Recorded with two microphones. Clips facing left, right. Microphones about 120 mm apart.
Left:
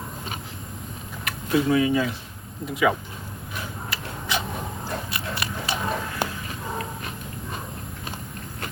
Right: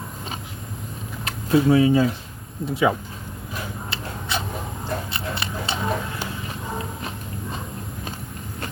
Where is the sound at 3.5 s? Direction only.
30° right (ahead or behind).